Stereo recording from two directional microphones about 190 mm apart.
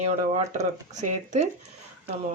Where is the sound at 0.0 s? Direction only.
35° right (ahead or behind).